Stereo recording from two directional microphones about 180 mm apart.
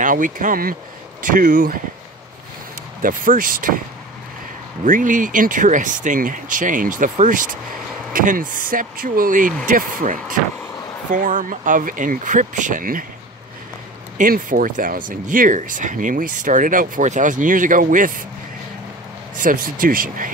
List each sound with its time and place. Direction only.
0.0 s speech: 45° right (ahead or behind)
3.0 s speech: 50° right (ahead or behind)
4.8 s speech: 45° right (ahead or behind)
14.1 s speech: 50° right (ahead or behind)
19.3 s speech: 50° right (ahead or behind)